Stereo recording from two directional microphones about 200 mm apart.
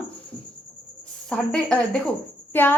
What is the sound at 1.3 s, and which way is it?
A woman's voice, 5° left (ahead or behind).